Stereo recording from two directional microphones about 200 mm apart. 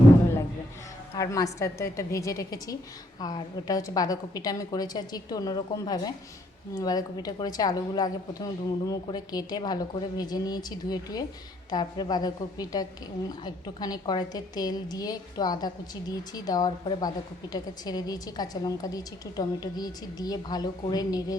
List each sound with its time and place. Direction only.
1.1 s a woman's voice: 15° left (ahead or behind)